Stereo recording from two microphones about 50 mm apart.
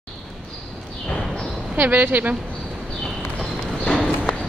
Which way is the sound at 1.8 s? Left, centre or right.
Right.